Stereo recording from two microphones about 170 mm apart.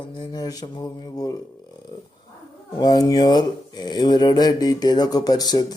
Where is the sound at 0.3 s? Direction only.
25° left (ahead or behind).